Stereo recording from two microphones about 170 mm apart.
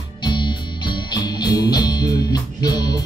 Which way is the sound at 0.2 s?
25° left (ahead or behind).